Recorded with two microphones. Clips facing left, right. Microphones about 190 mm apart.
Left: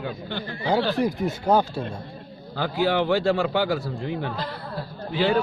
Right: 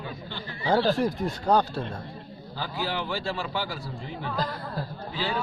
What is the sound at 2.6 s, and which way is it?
A man's voice, 60° left (ahead or behind).